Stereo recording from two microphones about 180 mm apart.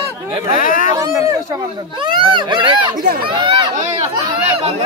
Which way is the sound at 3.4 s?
35° right (ahead or behind).